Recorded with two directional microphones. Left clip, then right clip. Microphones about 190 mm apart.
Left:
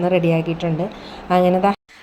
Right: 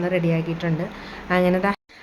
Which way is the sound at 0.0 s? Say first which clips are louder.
Left 5 dB; 15° left (ahead or behind).